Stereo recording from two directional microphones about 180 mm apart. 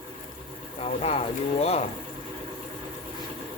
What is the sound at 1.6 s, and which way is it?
Speech, 35° left (ahead or behind).